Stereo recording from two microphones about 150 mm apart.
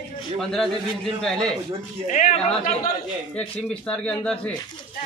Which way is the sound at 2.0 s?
55° left (ahead or behind).